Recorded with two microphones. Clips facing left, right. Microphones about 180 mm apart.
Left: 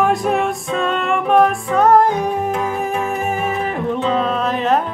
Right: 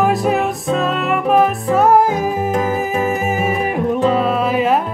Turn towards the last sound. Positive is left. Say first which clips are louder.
# right 2 dB
turn(degrees=-10)  # may be behind; listen again after turning